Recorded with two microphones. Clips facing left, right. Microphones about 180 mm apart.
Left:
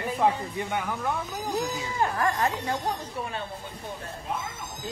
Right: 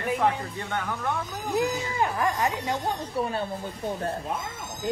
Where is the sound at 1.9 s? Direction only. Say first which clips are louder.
Left 2 dB; 15° right (ahead or behind).